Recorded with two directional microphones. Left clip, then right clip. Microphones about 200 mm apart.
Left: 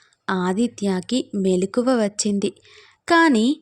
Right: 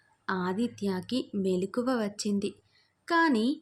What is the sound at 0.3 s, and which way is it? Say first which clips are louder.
A woman's voice: left 9 dB; 35° left (ahead or behind).